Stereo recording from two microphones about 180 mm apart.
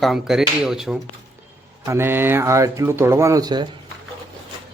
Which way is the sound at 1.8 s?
15° right (ahead or behind).